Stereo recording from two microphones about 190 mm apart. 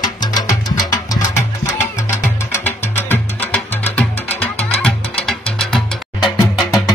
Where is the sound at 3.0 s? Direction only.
10° left (ahead or behind).